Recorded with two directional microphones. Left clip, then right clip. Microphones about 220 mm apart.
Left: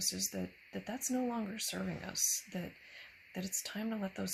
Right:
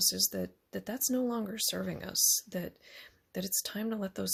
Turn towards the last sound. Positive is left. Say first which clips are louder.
# right 4 dB
turn(degrees=-45)  # may be behind; listen again after turning